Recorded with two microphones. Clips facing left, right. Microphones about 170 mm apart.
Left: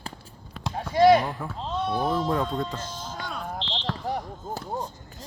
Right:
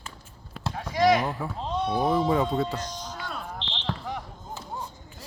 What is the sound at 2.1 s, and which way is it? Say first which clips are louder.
Speech: right 2 dB; centre (ahead or behind).